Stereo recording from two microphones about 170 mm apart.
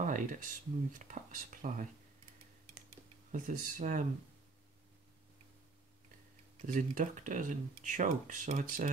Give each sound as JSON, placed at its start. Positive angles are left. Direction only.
{"t": 0.0, "sound": "speech", "side_deg": -50}
{"t": 3.3, "sound": "speech", "side_deg": -50}
{"t": 6.6, "sound": "speech", "side_deg": -50}